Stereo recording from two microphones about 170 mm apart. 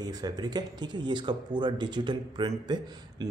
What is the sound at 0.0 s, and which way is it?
Speech, 25° right (ahead or behind).